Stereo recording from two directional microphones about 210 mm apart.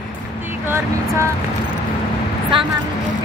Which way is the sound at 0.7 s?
15° right (ahead or behind).